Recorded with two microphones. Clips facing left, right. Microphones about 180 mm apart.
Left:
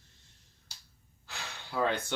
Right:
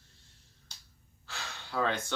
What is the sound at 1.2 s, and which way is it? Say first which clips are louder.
Speech: even; 15° left (ahead or behind).